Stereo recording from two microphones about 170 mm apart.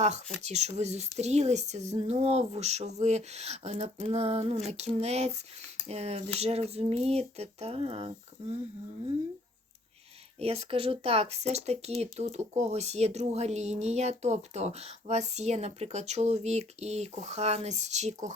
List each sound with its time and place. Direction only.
0.4 s speech: 40° right (ahead or behind)
10.4 s speech: 35° right (ahead or behind)